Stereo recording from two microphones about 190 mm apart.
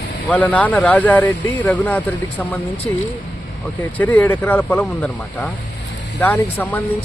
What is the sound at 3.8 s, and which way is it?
Speech, 10° left (ahead or behind).